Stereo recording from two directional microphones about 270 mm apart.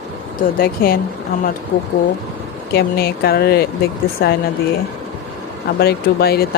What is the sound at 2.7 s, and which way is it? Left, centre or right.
Speech, left.